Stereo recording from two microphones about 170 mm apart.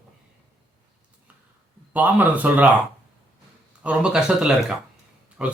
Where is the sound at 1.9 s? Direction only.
10° right (ahead or behind).